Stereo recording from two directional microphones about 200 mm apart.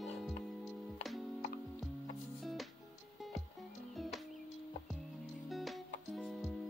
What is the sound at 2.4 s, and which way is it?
Music, centre (ahead or behind).